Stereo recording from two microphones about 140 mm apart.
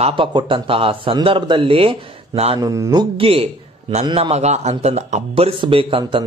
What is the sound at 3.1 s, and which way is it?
A man's voice, 40° right (ahead or behind).